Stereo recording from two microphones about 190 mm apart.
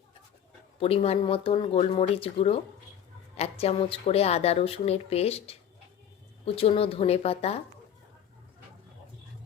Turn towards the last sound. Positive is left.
turn(degrees=30)  # may be behind; listen again after turning